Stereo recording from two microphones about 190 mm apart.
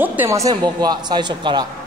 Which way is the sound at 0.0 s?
10° right (ahead or behind).